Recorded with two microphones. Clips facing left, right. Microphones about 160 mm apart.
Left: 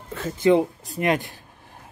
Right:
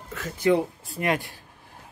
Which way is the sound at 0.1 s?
25° left (ahead or behind).